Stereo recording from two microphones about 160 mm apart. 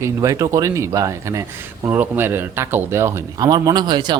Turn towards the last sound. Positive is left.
turn(degrees=-25)  # may be behind; listen again after turning